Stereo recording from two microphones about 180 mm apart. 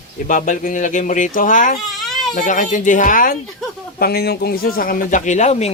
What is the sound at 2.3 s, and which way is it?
Speech, 45° left (ahead or behind).